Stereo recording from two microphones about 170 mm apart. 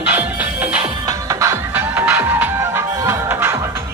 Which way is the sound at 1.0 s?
20° right (ahead or behind).